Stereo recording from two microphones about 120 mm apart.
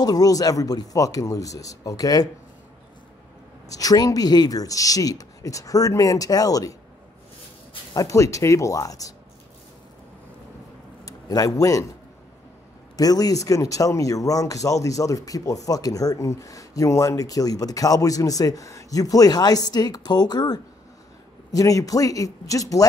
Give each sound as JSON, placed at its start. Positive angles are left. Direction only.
{"t": 0.0, "sound": "speech", "side_deg": 30}
{"t": 3.6, "sound": "speech", "side_deg": 30}
{"t": 7.9, "sound": "speech", "side_deg": 30}
{"t": 11.1, "sound": "speech", "side_deg": 30}
{"t": 12.9, "sound": "speech", "side_deg": 30}